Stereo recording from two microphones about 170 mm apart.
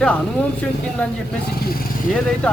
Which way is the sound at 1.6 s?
60° left (ahead or behind).